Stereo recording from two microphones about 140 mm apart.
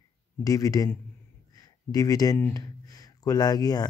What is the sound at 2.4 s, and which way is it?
Speech, 20° left (ahead or behind).